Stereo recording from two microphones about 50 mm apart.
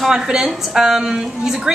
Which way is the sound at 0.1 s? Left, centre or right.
Centre.